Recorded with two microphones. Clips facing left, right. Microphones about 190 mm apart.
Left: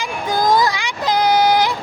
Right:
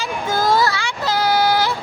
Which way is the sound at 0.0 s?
15° left (ahead or behind).